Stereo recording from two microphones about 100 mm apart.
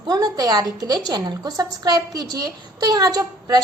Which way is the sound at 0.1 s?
40° right (ahead or behind).